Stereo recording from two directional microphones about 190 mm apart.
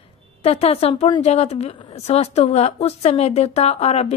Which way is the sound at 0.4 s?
30° left (ahead or behind).